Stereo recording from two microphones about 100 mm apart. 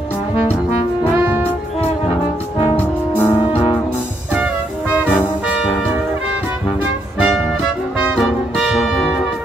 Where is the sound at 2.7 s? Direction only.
20° left (ahead or behind).